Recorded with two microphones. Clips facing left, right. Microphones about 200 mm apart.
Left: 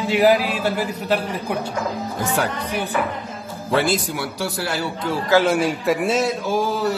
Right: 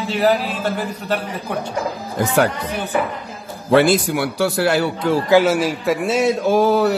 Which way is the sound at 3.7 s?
65° right (ahead or behind).